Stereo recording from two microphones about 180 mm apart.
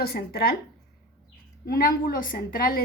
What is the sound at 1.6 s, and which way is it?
A woman's voice, 55° left (ahead or behind).